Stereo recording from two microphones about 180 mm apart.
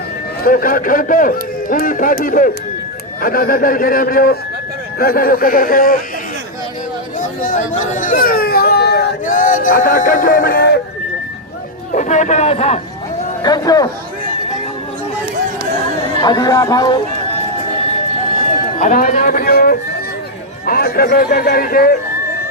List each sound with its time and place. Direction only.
0.4 s a man's voice: 50° left (ahead or behind)
7.2 s baby cry: 45° left (ahead or behind); by 9.0 s 65° left (ahead or behind)
9.2 s speech: 45° left (ahead or behind)
11.9 s a man's voice: 40° left (ahead or behind)
13.4 s speech: 20° left (ahead or behind)
16.2 s speech: 20° left (ahead or behind)
18.8 s a man's voice: 45° left (ahead or behind)